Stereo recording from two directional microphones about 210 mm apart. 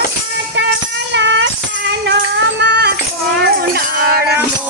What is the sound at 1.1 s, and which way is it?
Music, 60° right (ahead or behind).